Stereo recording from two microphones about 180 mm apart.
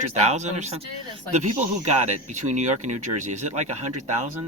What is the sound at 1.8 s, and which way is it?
Speech, 40° right (ahead or behind).